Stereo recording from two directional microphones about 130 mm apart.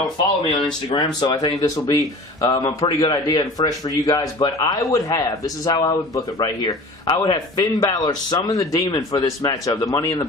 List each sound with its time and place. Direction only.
0.9 s a man's voice: 30° left (ahead or behind)